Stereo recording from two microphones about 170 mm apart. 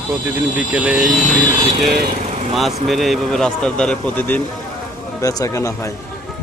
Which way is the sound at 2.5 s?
Centre (ahead or behind).